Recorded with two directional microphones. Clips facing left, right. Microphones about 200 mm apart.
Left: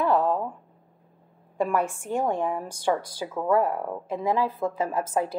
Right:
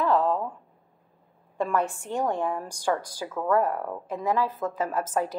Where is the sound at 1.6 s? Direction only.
15° left (ahead or behind).